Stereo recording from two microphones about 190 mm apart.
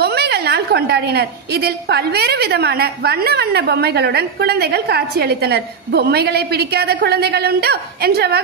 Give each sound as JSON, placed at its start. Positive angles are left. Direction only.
{"t": 0.0, "sound": "a woman's voice", "side_deg": -60}